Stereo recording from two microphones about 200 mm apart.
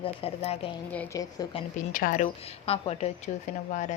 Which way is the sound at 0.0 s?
30° left (ahead or behind).